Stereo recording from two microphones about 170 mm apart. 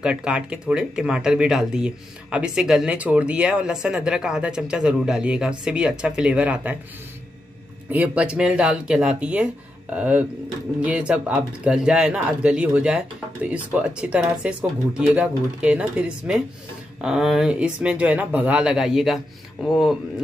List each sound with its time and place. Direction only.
0.0 s speech: 5° right (ahead or behind)
7.9 s speech: 10° right (ahead or behind)